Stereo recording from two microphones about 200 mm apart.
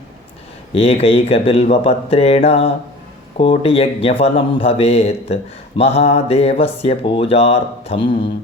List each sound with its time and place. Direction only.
0.7 s speech: 30° left (ahead or behind)